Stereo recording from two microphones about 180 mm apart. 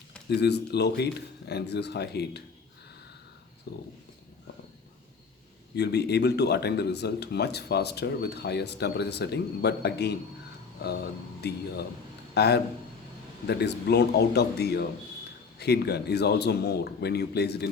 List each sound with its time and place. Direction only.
0.3 s speech: 70° left (ahead or behind)
3.7 s a man's voice: 65° left (ahead or behind)
5.7 s a man's voice: 65° left (ahead or behind)